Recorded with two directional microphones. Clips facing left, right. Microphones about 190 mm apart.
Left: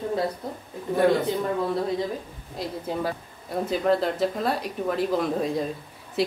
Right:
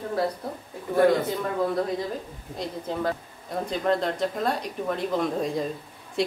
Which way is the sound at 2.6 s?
10° left (ahead or behind).